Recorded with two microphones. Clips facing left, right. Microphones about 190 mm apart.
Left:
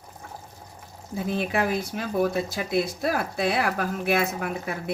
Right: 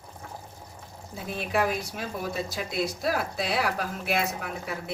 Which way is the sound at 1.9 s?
55° left (ahead or behind).